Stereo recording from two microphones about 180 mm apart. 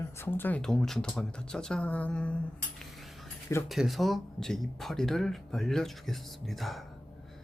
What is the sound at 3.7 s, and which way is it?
Speech, centre (ahead or behind).